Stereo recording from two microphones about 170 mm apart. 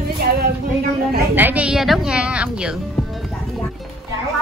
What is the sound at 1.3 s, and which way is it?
A woman's voice, 10° right (ahead or behind).